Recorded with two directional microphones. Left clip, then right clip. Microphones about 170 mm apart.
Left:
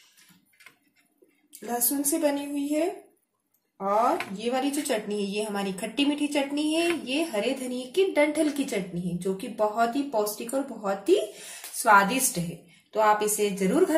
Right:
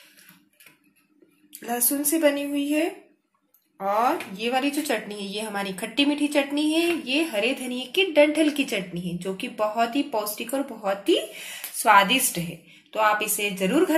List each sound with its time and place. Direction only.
1.7 s a woman's voice: 15° right (ahead or behind)